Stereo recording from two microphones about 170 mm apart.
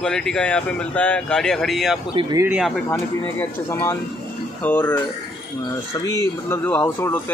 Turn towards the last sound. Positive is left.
turn(degrees=15)  # may be behind; listen again after turning